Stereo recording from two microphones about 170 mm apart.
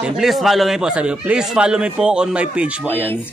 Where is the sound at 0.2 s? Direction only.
Centre (ahead or behind).